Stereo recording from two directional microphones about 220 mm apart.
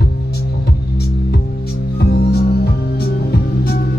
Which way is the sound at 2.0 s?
45° left (ahead or behind).